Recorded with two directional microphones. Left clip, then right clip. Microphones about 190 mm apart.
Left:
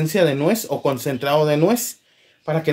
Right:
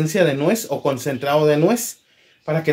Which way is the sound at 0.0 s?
30° left (ahead or behind).